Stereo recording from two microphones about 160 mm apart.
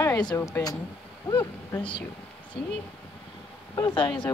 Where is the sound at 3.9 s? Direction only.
30° left (ahead or behind).